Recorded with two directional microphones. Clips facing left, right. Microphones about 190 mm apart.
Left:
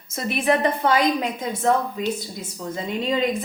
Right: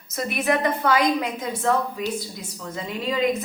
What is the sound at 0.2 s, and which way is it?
A woman's voice, 30° left (ahead or behind).